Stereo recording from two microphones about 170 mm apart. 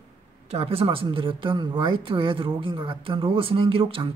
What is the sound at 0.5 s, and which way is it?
Speech, 35° right (ahead or behind).